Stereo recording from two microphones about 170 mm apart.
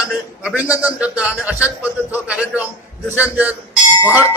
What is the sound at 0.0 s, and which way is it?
A man's voice, 5° right (ahead or behind).